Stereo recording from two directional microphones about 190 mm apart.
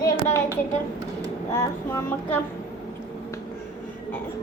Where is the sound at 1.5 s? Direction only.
10° left (ahead or behind).